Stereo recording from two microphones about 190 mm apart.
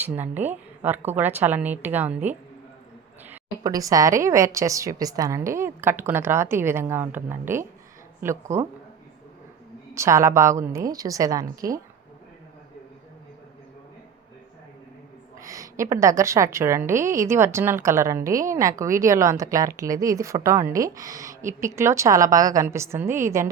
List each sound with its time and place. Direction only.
0.0 s a woman's voice: 10° right (ahead or behind)
3.6 s a woman's voice: 20° right (ahead or behind)
9.9 s a woman's voice: 15° right (ahead or behind)
15.4 s a woman's voice: 20° right (ahead or behind)